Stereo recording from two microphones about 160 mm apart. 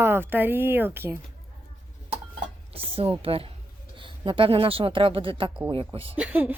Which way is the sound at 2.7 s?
35° right (ahead or behind).